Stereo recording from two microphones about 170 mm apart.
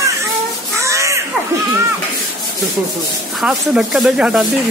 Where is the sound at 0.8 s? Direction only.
15° right (ahead or behind).